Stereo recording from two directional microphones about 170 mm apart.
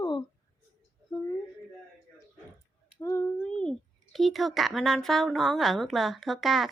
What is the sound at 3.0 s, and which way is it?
Speech, 15° left (ahead or behind).